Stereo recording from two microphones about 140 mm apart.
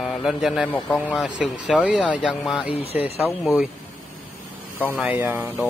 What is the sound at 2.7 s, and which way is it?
Speech, 45° left (ahead or behind).